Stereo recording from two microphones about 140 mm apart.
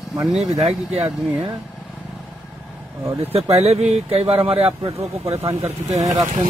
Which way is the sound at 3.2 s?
45° right (ahead or behind).